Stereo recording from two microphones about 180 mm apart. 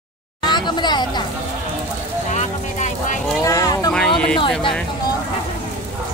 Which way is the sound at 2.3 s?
40° left (ahead or behind).